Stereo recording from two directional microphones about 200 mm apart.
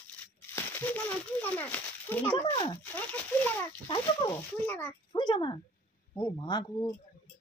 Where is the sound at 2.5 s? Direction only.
20° left (ahead or behind).